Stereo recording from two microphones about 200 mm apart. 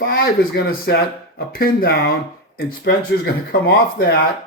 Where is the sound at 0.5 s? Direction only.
50° left (ahead or behind).